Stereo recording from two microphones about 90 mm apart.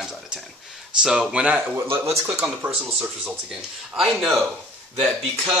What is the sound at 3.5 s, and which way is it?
Speech, 5° right (ahead or behind).